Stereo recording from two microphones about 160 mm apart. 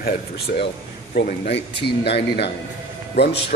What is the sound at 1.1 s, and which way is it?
Speech, 60° left (ahead or behind).